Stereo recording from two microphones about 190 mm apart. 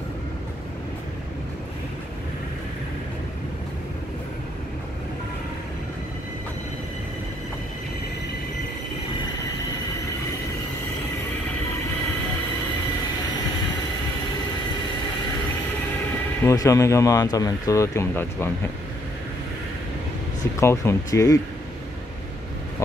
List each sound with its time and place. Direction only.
16.4 s speech: 15° left (ahead or behind)
20.6 s speech: 15° left (ahead or behind)